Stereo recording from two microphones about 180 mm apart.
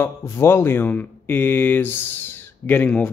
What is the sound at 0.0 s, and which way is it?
Speech, 15° left (ahead or behind).